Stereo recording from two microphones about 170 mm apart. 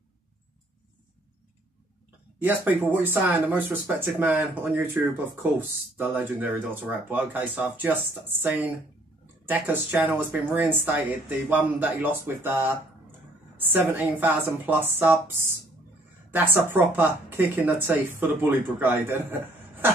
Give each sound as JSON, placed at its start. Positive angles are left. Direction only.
{"t": 2.4, "sound": "a woman's voice", "side_deg": -10}